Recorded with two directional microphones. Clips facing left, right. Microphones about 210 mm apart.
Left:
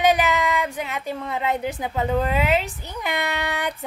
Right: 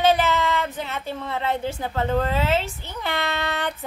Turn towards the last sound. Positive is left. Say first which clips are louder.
# even
turn(degrees=15)  # may be behind; listen again after turning